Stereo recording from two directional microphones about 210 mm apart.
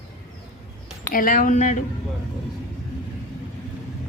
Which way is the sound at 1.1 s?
40° left (ahead or behind).